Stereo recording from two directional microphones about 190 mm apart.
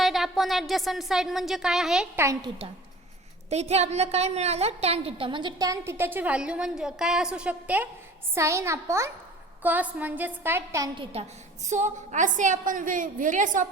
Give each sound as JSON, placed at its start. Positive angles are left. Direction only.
{"t": 0.0, "sound": "a woman's voice", "side_deg": 0}
{"t": 2.2, "sound": "a woman's voice", "side_deg": -20}
{"t": 3.5, "sound": "a woman's voice", "side_deg": -35}
{"t": 11.0, "sound": "a woman's voice", "side_deg": -30}